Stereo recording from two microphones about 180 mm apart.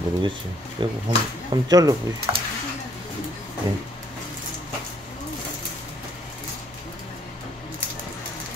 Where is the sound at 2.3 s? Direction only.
20° right (ahead or behind).